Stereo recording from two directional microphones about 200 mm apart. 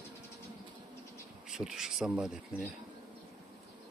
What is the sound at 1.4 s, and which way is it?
Speech, 5° right (ahead or behind).